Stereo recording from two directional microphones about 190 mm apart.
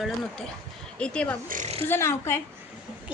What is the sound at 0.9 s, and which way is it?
Speech, 5° left (ahead or behind).